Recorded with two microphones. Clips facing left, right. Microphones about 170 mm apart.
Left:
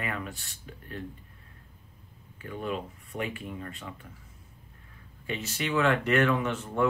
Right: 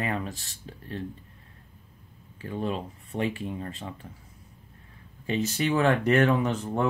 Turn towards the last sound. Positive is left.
turn(degrees=-35)  # may be behind; listen again after turning